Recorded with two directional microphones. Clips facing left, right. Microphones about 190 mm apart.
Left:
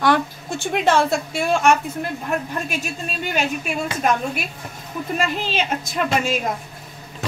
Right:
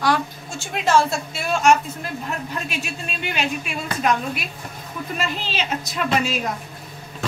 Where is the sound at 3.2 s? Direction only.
45° left (ahead or behind).